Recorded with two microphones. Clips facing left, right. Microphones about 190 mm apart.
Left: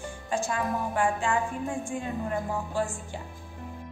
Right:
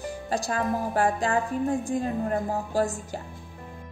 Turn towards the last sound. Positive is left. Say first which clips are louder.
# right 4 dB
turn(degrees=-40)  # may be behind; listen again after turning